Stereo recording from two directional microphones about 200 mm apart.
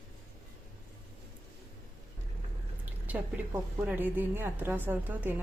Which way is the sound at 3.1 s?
5° right (ahead or behind).